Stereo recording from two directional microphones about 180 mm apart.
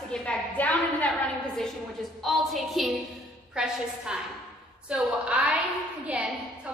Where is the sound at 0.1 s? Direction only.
5° left (ahead or behind).